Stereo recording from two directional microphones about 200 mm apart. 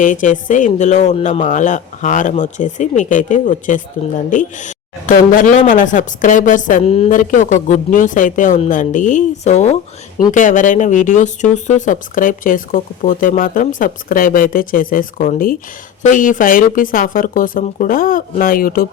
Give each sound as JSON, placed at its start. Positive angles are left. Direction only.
{"t": 0.0, "sound": "speech", "side_deg": 40}